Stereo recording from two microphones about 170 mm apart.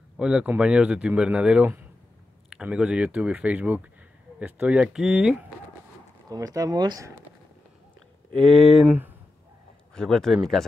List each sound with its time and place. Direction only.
0.2 s speech: 5° right (ahead or behind)
6.2 s speech: 20° right (ahead or behind)
8.4 s speech: centre (ahead or behind)
8.8 s speech: 10° right (ahead or behind)
9.9 s speech: 5° left (ahead or behind)